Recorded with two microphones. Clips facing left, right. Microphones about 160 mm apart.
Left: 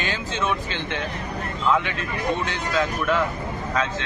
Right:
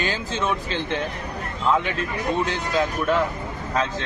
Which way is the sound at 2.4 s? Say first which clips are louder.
Right 1 dB; 40° right (ahead or behind).